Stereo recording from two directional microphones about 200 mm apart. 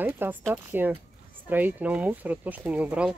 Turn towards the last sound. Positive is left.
turn(degrees=-5)  # may be behind; listen again after turning